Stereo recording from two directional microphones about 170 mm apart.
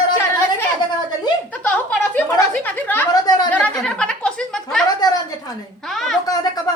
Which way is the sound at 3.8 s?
5° left (ahead or behind).